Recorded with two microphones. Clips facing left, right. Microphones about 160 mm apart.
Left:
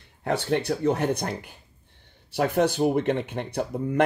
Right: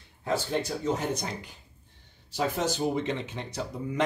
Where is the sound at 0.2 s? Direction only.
65° left (ahead or behind).